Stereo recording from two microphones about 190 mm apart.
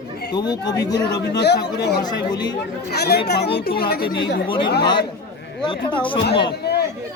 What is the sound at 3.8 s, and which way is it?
Speech, 55° left (ahead or behind).